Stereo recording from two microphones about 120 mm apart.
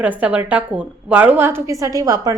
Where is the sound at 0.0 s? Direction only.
10° right (ahead or behind).